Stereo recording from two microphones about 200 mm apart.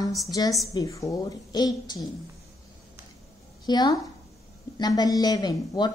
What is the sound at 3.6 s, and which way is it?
A woman's voice, 20° left (ahead or behind).